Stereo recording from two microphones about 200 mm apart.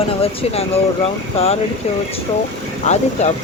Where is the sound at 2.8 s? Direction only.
35° left (ahead or behind).